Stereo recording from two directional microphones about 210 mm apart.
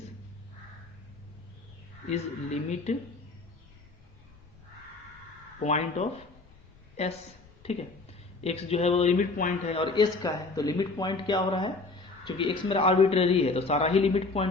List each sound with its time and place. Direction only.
2.0 s a man's voice: 30° left (ahead or behind)
5.6 s a man's voice: 30° left (ahead or behind)
9.7 s a man's voice: 25° left (ahead or behind)